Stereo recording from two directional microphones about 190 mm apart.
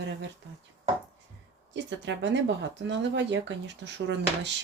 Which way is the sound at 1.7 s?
70° right (ahead or behind).